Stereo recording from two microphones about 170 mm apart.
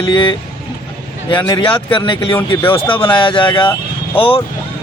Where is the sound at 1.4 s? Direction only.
25° left (ahead or behind).